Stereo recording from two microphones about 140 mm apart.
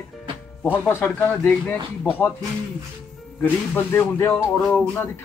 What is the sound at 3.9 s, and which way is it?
Speech, 15° left (ahead or behind).